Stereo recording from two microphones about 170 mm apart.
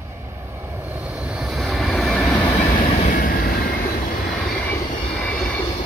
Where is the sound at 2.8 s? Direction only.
45° left (ahead or behind).